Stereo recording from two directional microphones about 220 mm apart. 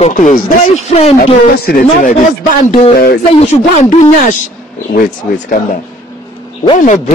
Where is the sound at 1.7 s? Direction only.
40° left (ahead or behind).